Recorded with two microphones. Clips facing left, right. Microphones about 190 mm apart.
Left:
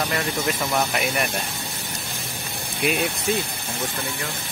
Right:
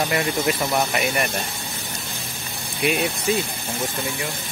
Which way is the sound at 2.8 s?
Centre (ahead or behind).